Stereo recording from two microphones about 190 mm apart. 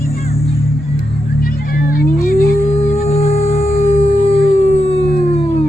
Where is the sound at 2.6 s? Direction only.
35° left (ahead or behind).